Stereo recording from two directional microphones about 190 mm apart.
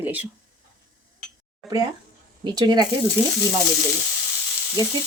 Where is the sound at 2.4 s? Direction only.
25° right (ahead or behind).